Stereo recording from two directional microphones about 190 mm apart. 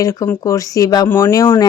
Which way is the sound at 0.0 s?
15° left (ahead or behind).